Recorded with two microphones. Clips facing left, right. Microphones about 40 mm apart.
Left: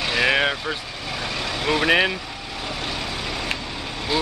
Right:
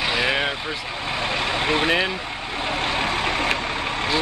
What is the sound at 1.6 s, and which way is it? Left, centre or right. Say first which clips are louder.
Speech: left 1 dB; right.